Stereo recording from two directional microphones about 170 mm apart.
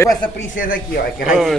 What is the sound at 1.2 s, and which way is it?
Speech, 5° right (ahead or behind).